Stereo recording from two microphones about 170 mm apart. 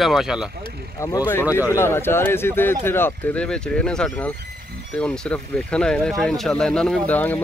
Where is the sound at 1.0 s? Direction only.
20° left (ahead or behind).